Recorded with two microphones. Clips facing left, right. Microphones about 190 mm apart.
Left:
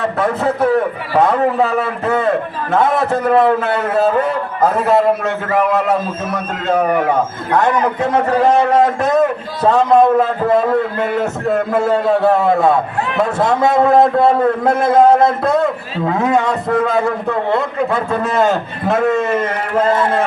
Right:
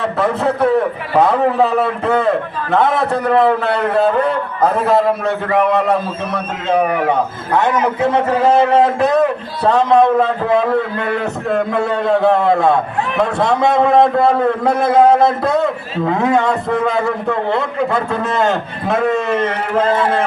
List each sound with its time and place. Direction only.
0.2 s a man's voice: centre (ahead or behind)